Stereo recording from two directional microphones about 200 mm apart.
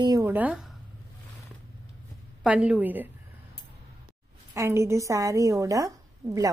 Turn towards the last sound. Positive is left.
turn(degrees=-15)  # may be behind; listen again after turning